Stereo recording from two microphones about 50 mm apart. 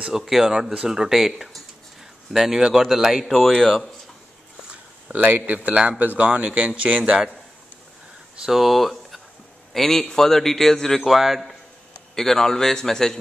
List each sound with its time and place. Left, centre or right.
0.2 s a man's voice: centre
4.6 s a sound: right
5.2 s speech: right
8.4 s a man's voice: centre
12.2 s a man's voice: centre